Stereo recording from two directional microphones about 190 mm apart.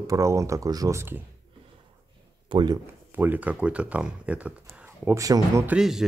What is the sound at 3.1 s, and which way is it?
Speech, 10° right (ahead or behind).